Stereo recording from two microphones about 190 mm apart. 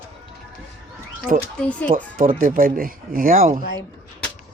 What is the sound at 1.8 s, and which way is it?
Speech, 45° right (ahead or behind).